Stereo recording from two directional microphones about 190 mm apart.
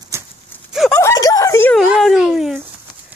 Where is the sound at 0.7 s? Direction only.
Centre (ahead or behind).